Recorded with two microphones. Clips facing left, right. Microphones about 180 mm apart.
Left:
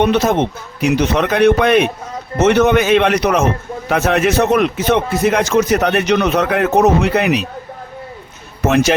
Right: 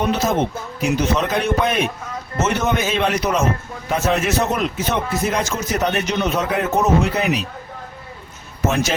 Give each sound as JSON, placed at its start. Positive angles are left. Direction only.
{"t": 0.0, "sound": "a man's voice", "side_deg": 70}
{"t": 8.6, "sound": "a man's voice", "side_deg": 65}